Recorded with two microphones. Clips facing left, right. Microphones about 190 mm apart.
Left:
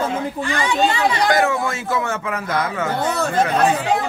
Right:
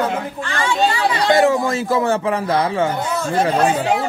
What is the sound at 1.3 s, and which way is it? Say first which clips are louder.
A man's voice: right 4 dB; 30° right (ahead or behind).